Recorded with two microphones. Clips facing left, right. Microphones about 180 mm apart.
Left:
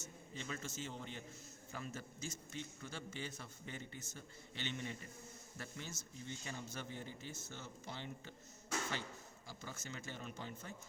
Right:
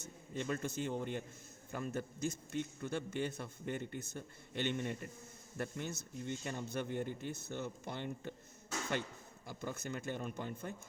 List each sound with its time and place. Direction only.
0.0 s a man's voice: 55° right (ahead or behind)
9.5 s a man's voice: 55° right (ahead or behind)